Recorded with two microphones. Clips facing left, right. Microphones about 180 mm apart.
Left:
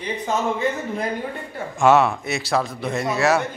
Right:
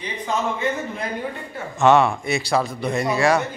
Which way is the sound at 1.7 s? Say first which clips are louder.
Even; 5° left (ahead or behind).